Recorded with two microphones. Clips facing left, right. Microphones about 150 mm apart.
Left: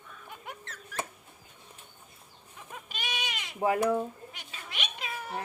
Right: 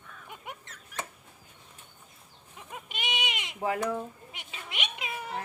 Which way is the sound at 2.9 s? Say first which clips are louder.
Right 2 dB; 20° right (ahead or behind).